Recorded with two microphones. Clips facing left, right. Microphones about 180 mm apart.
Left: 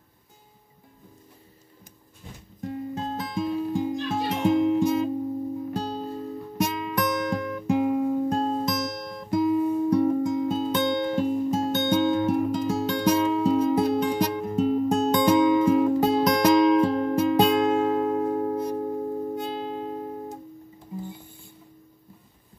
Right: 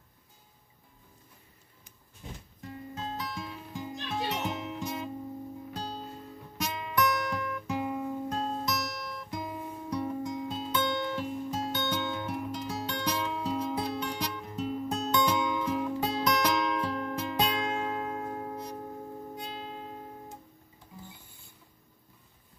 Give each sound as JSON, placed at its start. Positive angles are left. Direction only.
{"t": 2.6, "sound": "music", "side_deg": 45}
{"t": 6.6, "sound": "guitar", "side_deg": 55}
{"t": 8.3, "sound": "music", "side_deg": 35}
{"t": 9.0, "sound": "guitar", "side_deg": 45}